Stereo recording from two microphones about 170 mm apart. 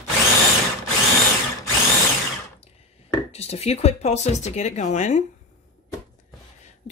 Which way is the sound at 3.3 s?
40° left (ahead or behind).